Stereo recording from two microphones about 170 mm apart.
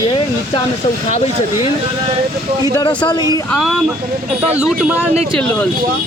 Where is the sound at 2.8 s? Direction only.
25° left (ahead or behind).